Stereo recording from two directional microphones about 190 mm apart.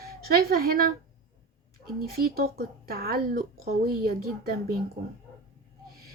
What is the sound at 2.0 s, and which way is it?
Speech, 50° right (ahead or behind).